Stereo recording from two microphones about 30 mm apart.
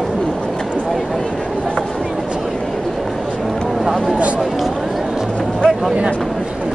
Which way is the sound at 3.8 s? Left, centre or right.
Centre.